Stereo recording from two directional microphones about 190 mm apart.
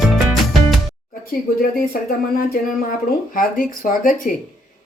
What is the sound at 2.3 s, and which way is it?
A woman's voice, 50° left (ahead or behind).